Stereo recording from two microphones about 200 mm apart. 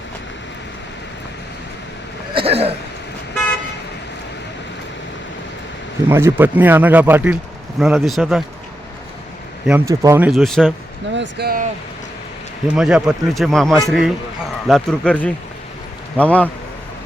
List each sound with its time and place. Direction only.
2.3 s speech: 30° right (ahead or behind)
6.1 s speech: 10° right (ahead or behind)
9.6 s speech: 15° right (ahead or behind)
11.1 s speech: 60° right (ahead or behind)
12.6 s speech: 5° right (ahead or behind)